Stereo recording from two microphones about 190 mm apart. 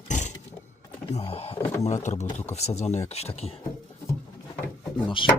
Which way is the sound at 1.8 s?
40° left (ahead or behind).